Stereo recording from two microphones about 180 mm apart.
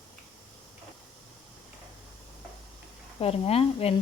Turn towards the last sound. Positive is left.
turn(degrees=35)  # may be behind; listen again after turning